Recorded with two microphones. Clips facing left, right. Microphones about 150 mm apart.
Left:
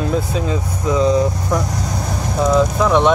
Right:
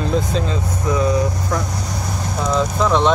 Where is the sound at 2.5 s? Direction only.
10° left (ahead or behind).